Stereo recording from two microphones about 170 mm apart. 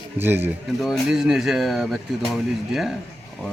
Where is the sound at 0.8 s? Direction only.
Centre (ahead or behind).